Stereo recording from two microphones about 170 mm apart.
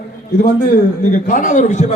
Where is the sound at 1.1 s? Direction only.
50° left (ahead or behind).